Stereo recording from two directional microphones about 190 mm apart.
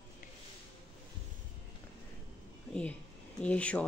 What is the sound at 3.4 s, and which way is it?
Speech, 5° left (ahead or behind).